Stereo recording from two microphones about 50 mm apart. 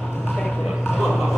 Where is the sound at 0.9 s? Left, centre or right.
Centre.